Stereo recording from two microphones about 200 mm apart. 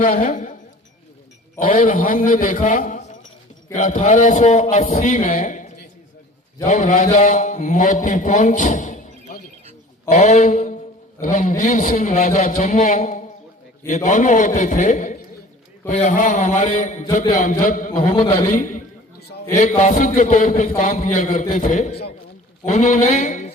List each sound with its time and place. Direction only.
0.0 s a man's voice: 40° left (ahead or behind)
1.5 s a man's voice: 45° left (ahead or behind)
18.1 s a man's voice: 25° left (ahead or behind)
18.5 s a man's voice: 40° left (ahead or behind)